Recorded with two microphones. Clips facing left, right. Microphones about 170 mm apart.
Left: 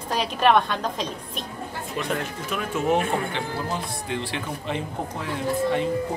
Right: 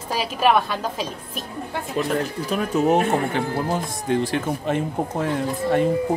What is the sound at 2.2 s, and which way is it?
Speech, 35° right (ahead or behind).